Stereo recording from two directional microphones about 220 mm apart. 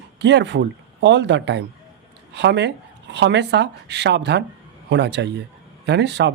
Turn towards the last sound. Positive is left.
turn(degrees=-50)  # may be behind; listen again after turning